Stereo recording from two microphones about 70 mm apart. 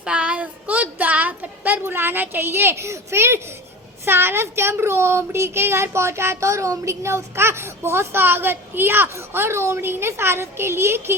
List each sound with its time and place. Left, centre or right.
0.0 s a woman's voice: centre; by 11.1 s right